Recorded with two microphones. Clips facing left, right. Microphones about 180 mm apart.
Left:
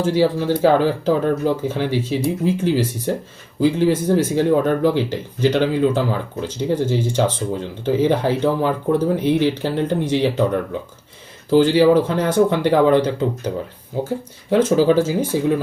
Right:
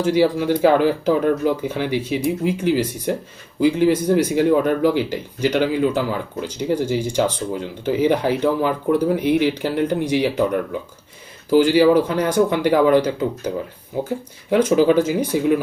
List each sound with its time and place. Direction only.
0.0 s speech: 15° right (ahead or behind)
14.5 s speech: 15° right (ahead or behind)